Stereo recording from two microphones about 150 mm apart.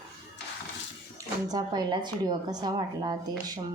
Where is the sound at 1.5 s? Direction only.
25° right (ahead or behind).